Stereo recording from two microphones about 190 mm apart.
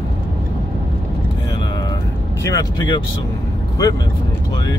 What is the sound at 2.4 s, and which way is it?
Speech, 20° left (ahead or behind).